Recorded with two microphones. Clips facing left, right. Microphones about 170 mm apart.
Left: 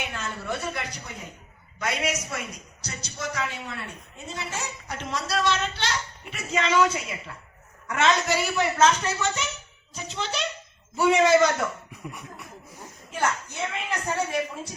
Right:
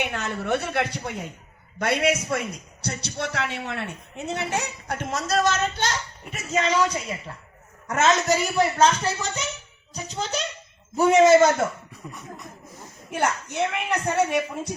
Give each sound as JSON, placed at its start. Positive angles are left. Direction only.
{"t": 0.0, "sound": "a woman's voice", "side_deg": -65}
{"t": 11.9, "sound": "a sound", "side_deg": 10}
{"t": 13.1, "sound": "a woman's voice", "side_deg": -65}